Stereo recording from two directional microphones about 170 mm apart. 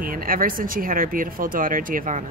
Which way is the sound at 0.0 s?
55° right (ahead or behind).